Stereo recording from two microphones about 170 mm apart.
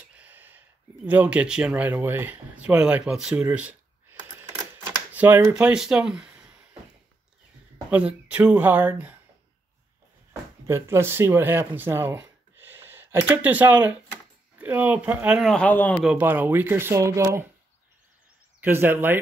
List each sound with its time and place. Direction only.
0.1 s a sound: 10° right (ahead or behind)
1.0 s speech: 10° right (ahead or behind)
5.1 s a sound: 10° right (ahead or behind)
5.5 s speech: 5° right (ahead or behind)
7.9 s speech: 5° right (ahead or behind)
10.7 s speech: 15° right (ahead or behind)
15.5 s speech: 10° left (ahead or behind)
16.0 s speech: 10° right (ahead or behind)
18.6 s speech: 10° right (ahead or behind)